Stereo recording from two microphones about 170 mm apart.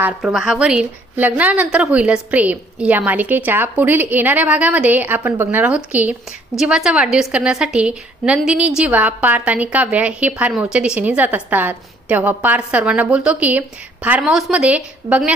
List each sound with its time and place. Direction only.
0.2 s a woman's voice: centre (ahead or behind)